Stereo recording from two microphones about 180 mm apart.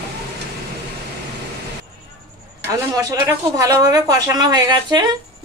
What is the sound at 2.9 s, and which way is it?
Speech, 15° right (ahead or behind).